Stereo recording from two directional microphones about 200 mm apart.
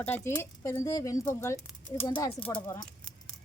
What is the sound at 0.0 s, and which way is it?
Speech, 10° left (ahead or behind).